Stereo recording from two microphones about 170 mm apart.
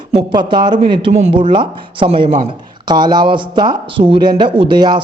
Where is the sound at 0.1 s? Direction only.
25° right (ahead or behind).